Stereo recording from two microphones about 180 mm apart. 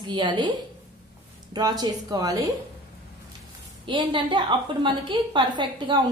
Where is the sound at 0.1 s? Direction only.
25° right (ahead or behind).